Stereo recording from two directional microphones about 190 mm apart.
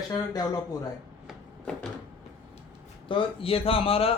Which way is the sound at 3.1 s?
30° left (ahead or behind).